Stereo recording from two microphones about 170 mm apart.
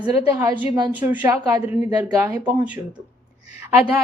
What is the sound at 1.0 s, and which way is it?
Speech, 10° right (ahead or behind).